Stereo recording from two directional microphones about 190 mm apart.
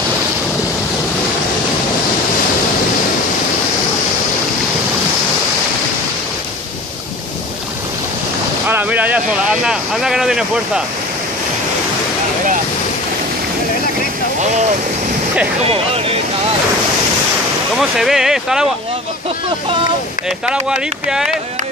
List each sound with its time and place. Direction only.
8.6 s speech: 10° right (ahead or behind)
14.4 s wind noise: 35° right (ahead or behind)
15.6 s speech: 30° right (ahead or behind)
17.7 s speech: centre (ahead or behind)
20.2 s speech: 5° right (ahead or behind)